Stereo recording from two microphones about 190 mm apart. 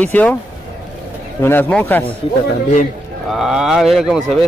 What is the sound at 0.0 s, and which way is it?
Speech, 10° left (ahead or behind).